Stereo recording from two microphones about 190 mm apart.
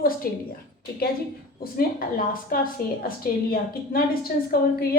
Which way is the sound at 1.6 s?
50° left (ahead or behind).